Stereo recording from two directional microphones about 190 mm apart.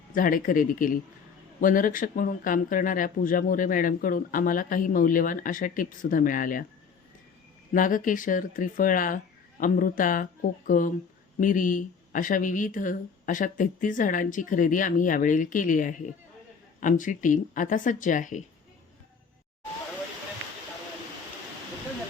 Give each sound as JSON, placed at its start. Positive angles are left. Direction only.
{"t": 0.1, "sound": "speech", "side_deg": 45}
{"t": 7.7, "sound": "speech", "side_deg": 45}